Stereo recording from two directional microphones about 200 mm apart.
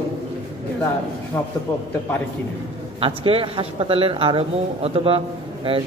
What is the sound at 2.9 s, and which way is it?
Speech, 25° right (ahead or behind).